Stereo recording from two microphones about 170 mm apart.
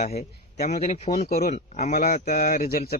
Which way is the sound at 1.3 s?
60° left (ahead or behind).